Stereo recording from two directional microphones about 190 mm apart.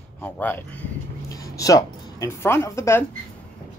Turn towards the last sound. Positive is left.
turn(degrees=15)  # may be behind; listen again after turning